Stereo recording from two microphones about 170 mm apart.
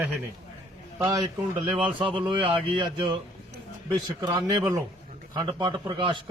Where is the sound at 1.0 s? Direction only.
25° right (ahead or behind).